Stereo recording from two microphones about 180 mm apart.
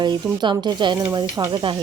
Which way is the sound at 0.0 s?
25° right (ahead or behind).